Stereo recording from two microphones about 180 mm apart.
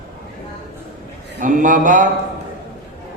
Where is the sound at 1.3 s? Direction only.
45° right (ahead or behind).